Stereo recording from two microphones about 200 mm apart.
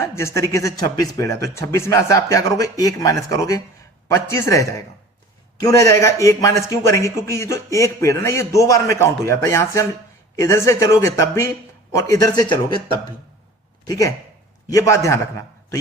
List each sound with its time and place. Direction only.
0.0 s speech: 15° left (ahead or behind)
13.8 s speech: 20° left (ahead or behind)